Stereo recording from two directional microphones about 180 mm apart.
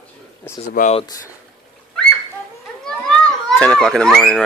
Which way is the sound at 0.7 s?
45° left (ahead or behind).